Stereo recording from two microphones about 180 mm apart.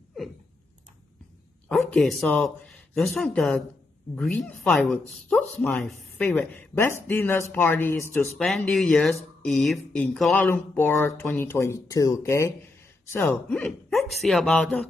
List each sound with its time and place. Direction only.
1.7 s speech: centre (ahead or behind)